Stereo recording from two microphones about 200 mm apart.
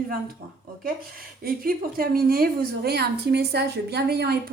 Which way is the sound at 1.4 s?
45° right (ahead or behind).